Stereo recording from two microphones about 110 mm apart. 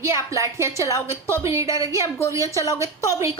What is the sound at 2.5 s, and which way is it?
Speech, 30° left (ahead or behind).